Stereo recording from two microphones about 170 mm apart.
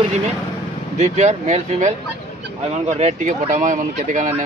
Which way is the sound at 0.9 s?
40° right (ahead or behind).